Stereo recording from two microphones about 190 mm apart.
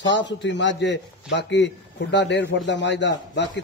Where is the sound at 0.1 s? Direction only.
70° left (ahead or behind).